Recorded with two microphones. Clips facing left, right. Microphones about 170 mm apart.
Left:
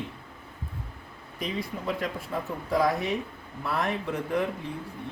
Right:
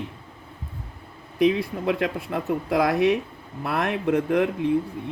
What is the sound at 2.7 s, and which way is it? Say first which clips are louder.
Speech: right 5 dB; 80° right.